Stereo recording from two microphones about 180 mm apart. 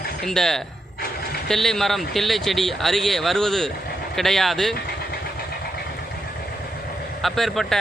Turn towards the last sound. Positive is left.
turn(degrees=0)  # may be behind; listen again after turning